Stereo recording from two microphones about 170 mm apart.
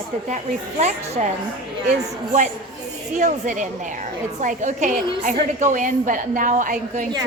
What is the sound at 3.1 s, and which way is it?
A woman's voice, 45° right (ahead or behind).